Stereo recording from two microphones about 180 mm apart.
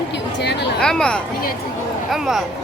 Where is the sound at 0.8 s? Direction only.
5° left (ahead or behind).